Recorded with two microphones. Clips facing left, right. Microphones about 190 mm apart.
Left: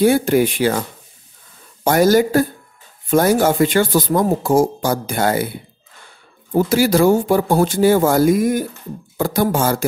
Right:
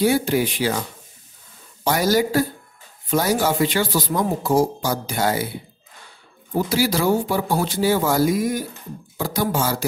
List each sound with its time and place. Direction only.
0.0 s speech: 50° left (ahead or behind)
1.9 s speech: 50° left (ahead or behind)